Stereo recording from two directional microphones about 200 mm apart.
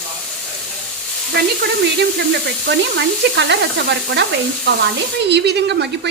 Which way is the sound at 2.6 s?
65° right (ahead or behind).